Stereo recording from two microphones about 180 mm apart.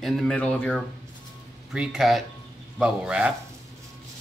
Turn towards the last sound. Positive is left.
turn(degrees=-5)  # may be behind; listen again after turning